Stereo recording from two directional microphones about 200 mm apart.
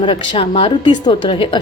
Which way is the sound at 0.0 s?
25° left (ahead or behind).